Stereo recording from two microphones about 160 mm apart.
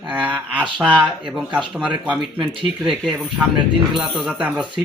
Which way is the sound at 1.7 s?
10° right (ahead or behind).